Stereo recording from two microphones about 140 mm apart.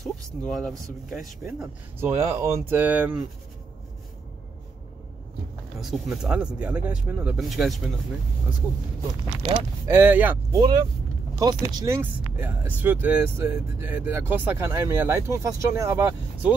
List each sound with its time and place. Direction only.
0.0 s speech: centre (ahead or behind)
2.0 s speech: 20° right (ahead or behind)
5.8 s speech: centre (ahead or behind)
9.8 s speech: 15° right (ahead or behind)
10.5 s speech: 25° right (ahead or behind)